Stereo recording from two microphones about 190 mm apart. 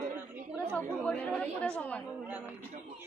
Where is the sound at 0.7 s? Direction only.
5° left (ahead or behind).